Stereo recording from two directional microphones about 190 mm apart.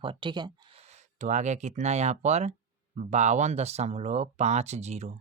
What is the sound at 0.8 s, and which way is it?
Speech, 40° right (ahead or behind).